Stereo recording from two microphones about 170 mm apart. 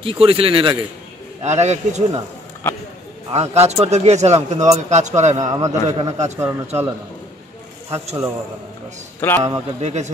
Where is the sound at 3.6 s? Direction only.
40° right (ahead or behind).